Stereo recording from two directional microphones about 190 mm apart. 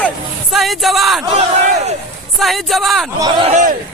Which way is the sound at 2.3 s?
Centre (ahead or behind).